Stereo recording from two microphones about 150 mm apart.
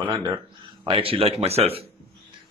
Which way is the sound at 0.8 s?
35° right (ahead or behind).